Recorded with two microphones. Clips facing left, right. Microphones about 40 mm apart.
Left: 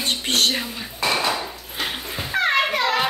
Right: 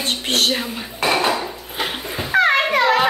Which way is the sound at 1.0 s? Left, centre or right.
Right.